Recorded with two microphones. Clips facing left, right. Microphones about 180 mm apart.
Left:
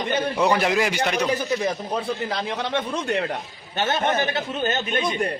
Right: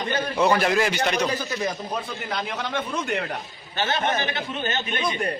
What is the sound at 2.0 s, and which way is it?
A man's voice, 30° left (ahead or behind).